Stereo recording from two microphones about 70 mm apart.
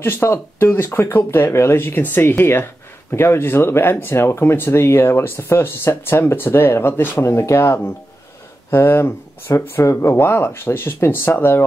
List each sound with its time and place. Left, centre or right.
0.0 s speech: left
7.2 s speech: left